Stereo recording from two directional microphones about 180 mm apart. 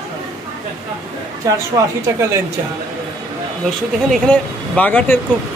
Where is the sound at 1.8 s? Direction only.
15° right (ahead or behind).